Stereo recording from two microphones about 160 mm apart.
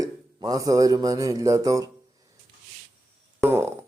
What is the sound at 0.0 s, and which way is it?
Speech, 20° right (ahead or behind).